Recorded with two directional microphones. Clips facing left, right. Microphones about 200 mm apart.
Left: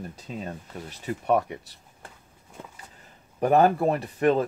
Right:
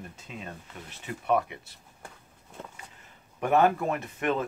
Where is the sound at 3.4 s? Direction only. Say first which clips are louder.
Left 4 dB; 35° left (ahead or behind).